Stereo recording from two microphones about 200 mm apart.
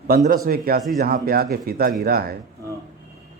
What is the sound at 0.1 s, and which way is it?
A man's voice, 45° right (ahead or behind).